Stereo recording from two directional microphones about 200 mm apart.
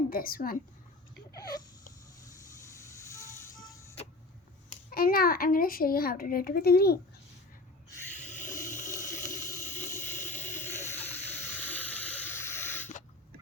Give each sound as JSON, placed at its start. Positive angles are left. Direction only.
{"t": 0.1, "sound": "a child's voice", "side_deg": 45}
{"t": 1.3, "sound": "a sound", "side_deg": 20}
{"t": 2.8, "sound": "vehicle", "side_deg": 15}
{"t": 4.7, "sound": "a child's voice", "side_deg": 45}
{"t": 8.1, "sound": "a sound", "side_deg": 35}
{"t": 8.7, "sound": "water", "side_deg": 40}
{"t": 9.6, "sound": "vehicle", "side_deg": 10}
{"t": 10.2, "sound": "a sound", "side_deg": 10}
{"t": 11.5, "sound": "spray", "side_deg": 10}